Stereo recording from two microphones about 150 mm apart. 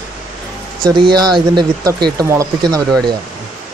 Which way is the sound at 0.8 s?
30° right (ahead or behind).